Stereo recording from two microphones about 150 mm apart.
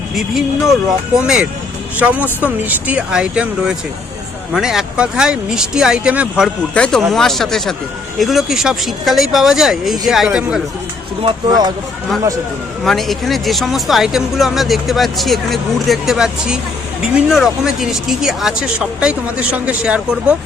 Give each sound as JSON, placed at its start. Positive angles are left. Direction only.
{"t": 0.1, "sound": "speech", "side_deg": 0}
{"t": 6.7, "sound": "speech", "side_deg": 5}
{"t": 11.2, "sound": "speech", "side_deg": -30}
{"t": 12.8, "sound": "speech", "side_deg": 0}